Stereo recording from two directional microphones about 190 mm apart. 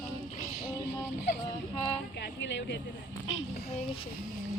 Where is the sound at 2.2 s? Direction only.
65° left (ahead or behind).